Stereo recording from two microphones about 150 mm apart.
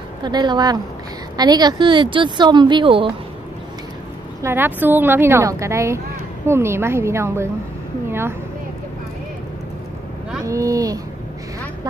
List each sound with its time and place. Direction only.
0.2 s speech: 30° right (ahead or behind)
4.4 s speech: 15° right (ahead or behind)
8.1 s a sound: 15° right (ahead or behind)
10.4 s speech: 20° right (ahead or behind)